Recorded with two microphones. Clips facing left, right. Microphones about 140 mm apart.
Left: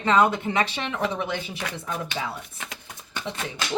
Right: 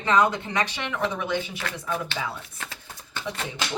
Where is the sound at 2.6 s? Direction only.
15° left (ahead or behind).